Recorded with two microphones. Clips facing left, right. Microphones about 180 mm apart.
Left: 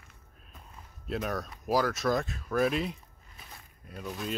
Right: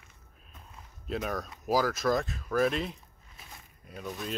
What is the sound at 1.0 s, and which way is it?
Speech, centre (ahead or behind).